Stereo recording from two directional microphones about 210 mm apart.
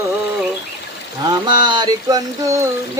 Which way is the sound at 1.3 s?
20° right (ahead or behind).